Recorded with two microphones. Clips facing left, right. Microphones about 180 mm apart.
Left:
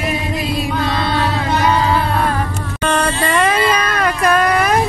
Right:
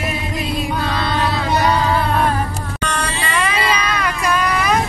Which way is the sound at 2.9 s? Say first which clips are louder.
Left 8 dB; 45° left (ahead or behind).